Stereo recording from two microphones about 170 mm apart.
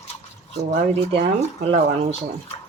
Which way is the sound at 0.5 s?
35° right (ahead or behind).